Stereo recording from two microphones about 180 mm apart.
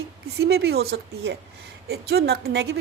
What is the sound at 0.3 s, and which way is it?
A woman's voice, 70° right (ahead or behind).